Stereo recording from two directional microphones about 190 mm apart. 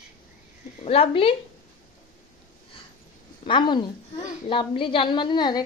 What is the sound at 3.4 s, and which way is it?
A woman's voice, 25° left (ahead or behind).